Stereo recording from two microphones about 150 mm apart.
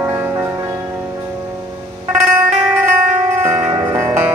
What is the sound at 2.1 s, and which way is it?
Music, 5° right (ahead or behind).